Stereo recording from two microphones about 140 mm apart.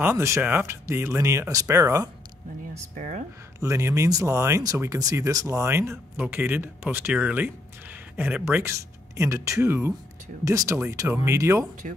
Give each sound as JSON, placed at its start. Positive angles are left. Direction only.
{"t": 0.0, "sound": "speech", "side_deg": -20}
{"t": 3.0, "sound": "speech", "side_deg": -60}
{"t": 3.5, "sound": "speech", "side_deg": -20}
{"t": 11.8, "sound": "speech", "side_deg": -65}